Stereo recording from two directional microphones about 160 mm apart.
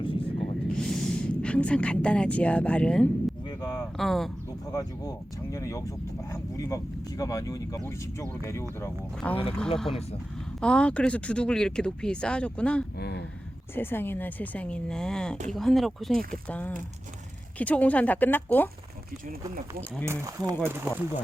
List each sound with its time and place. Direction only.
0.0 s a sound: 35° left (ahead or behind)
0.3 s a sound: 5° left (ahead or behind)
3.9 s speech: centre (ahead or behind)
4.7 s speech: 20° left (ahead or behind)
8.8 s speech: 10° left (ahead or behind)
10.6 s speech: 5° left (ahead or behind)
13.0 s speech: 90° left
13.7 s speech: 15° left (ahead or behind)
20.1 s speech: 20° right (ahead or behind)